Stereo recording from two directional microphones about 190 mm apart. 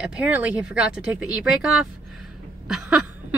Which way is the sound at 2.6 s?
5° right (ahead or behind).